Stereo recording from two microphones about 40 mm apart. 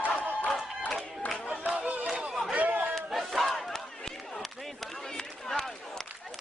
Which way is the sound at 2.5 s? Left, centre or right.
Right.